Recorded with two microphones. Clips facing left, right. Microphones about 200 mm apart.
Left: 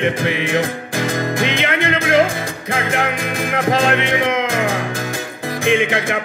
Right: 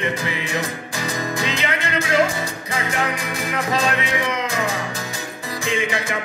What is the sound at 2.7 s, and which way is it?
Music, 55° left (ahead or behind).